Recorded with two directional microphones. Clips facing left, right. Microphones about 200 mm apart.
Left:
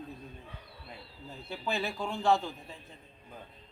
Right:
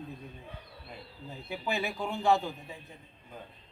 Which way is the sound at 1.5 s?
15° right (ahead or behind).